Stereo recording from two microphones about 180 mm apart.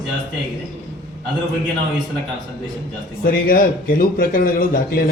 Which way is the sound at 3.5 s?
55° left (ahead or behind).